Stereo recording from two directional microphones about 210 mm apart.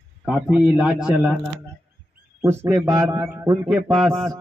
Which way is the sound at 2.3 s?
15° right (ahead or behind).